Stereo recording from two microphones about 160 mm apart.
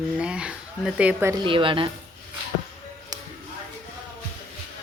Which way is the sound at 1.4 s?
30° right (ahead or behind).